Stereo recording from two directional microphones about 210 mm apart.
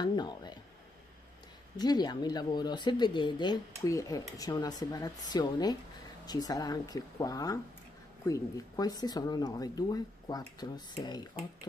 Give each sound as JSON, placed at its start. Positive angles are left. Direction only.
{"t": 0.0, "sound": "speech", "side_deg": 20}
{"t": 1.8, "sound": "speech", "side_deg": 20}